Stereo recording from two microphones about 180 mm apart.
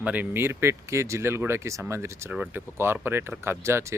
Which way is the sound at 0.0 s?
10° right (ahead or behind).